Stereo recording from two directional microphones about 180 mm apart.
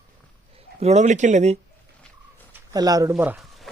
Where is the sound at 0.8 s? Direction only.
40° right (ahead or behind).